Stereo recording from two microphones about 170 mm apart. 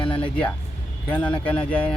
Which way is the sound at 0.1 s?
10° left (ahead or behind).